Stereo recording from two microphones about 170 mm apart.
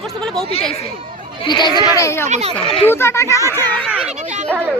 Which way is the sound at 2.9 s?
15° left (ahead or behind).